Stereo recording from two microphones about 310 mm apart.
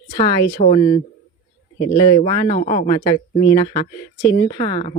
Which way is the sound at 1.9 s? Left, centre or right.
Centre.